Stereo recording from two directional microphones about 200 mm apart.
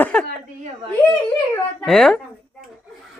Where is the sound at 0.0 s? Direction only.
5° left (ahead or behind).